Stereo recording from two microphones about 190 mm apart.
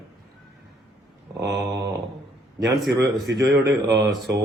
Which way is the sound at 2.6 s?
Centre (ahead or behind).